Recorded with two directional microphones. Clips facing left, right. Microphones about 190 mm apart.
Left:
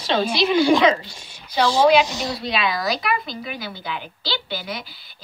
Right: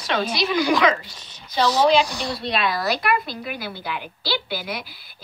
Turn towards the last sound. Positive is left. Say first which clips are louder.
# even
turn(degrees=-5)  # may be behind; listen again after turning